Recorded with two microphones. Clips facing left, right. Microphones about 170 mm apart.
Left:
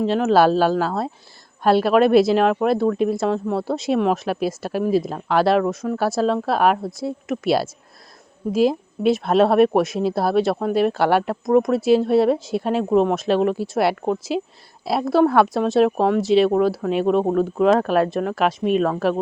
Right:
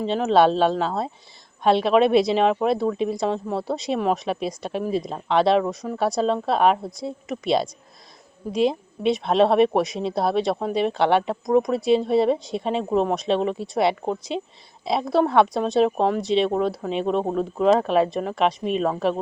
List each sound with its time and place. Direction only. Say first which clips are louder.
0.0 s speech: left 2 dB; centre (ahead or behind)